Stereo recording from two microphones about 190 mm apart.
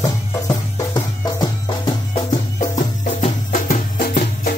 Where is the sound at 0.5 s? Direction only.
20° left (ahead or behind).